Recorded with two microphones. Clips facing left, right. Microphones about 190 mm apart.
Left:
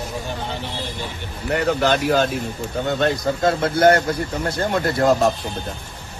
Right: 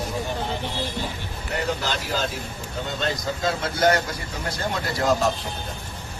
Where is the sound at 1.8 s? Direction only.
60° left (ahead or behind).